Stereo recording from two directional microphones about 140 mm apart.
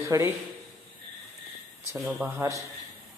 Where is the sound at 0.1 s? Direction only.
20° right (ahead or behind).